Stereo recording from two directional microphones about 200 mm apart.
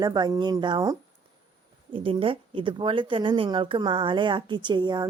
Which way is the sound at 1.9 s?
25° right (ahead or behind).